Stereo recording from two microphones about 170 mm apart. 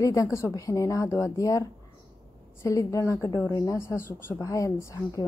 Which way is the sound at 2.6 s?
20° left (ahead or behind).